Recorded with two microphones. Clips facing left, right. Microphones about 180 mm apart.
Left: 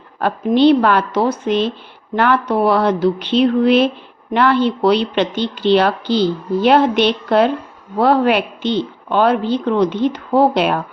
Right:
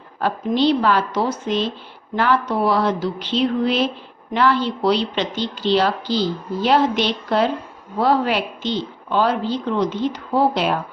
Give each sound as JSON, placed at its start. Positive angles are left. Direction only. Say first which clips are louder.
{"t": 0.2, "sound": "a woman's voice", "louder": "left 6 dB", "side_deg": 60}